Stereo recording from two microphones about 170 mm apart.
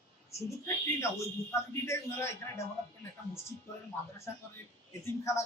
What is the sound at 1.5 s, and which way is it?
Speech, 15° left (ahead or behind).